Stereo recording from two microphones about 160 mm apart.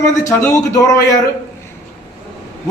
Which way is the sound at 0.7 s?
20° left (ahead or behind).